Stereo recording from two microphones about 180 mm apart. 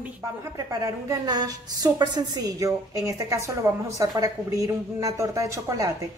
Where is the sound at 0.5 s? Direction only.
20° right (ahead or behind).